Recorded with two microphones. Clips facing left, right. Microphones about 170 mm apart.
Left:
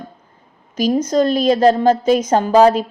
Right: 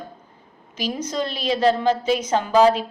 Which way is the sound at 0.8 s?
45° left (ahead or behind).